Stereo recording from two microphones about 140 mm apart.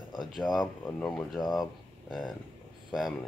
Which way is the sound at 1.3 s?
30° left (ahead or behind).